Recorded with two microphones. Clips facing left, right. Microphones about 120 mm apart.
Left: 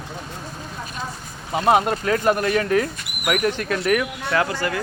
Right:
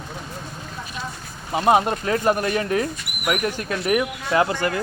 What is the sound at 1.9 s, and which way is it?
Speech, 25° right (ahead or behind).